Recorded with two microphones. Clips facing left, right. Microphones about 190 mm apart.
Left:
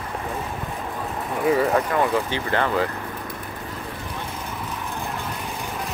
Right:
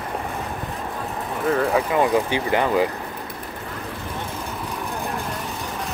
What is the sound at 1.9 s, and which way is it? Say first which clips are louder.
Speech: right 3 dB; 15° right (ahead or behind).